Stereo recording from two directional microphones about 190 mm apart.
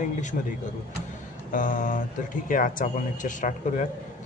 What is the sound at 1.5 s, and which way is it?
Speech, 45° left (ahead or behind).